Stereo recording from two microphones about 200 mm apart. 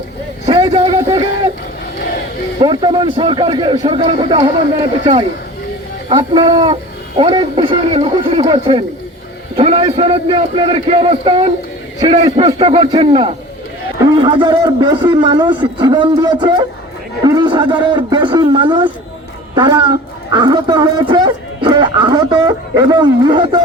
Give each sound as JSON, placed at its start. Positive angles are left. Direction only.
{"t": 0.4, "sound": "a sound", "side_deg": -25}
{"t": 2.0, "sound": "crowd", "side_deg": 50}
{"t": 2.6, "sound": "a man's voice", "side_deg": -25}
{"t": 6.1, "sound": "a man's voice", "side_deg": -25}